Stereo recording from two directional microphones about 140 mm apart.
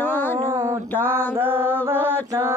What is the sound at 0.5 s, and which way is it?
Mantra, 20° right (ahead or behind).